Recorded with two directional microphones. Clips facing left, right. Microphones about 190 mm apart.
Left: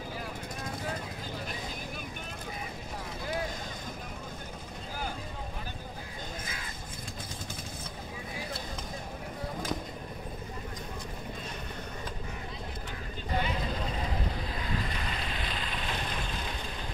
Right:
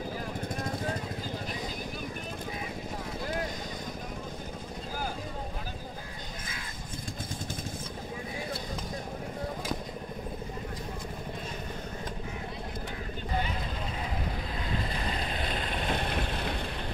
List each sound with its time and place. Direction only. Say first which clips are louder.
15.3 s vehicle: right 4 dB; 45° right (ahead or behind); by 16.5 s 65° right (ahead or behind)